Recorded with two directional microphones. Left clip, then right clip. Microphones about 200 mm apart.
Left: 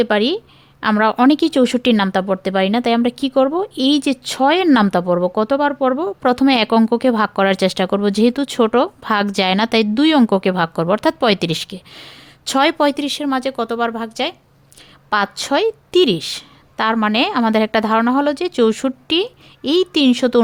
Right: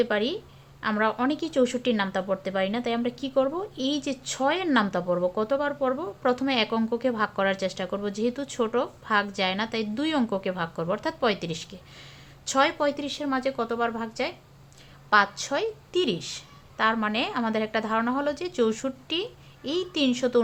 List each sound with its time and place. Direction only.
0.0 s speech: 55° left (ahead or behind)